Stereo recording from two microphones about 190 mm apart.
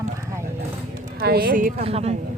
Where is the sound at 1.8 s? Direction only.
35° right (ahead or behind).